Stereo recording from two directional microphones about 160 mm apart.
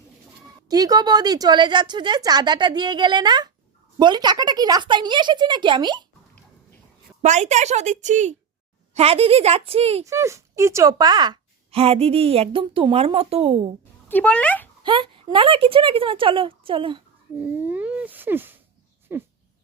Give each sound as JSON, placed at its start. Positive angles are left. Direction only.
{"t": 0.7, "sound": "a woman's voice", "side_deg": -25}
{"t": 7.2, "sound": "a child's voice", "side_deg": -45}
{"t": 10.1, "sound": "a woman's voice", "side_deg": -20}
{"t": 14.1, "sound": "a child's voice", "side_deg": 10}
{"t": 14.8, "sound": "a woman's voice", "side_deg": -30}
{"t": 17.4, "sound": "a sound", "side_deg": -10}